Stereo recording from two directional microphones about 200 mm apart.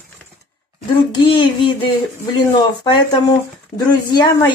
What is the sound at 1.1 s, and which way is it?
Speech, 25° left (ahead or behind).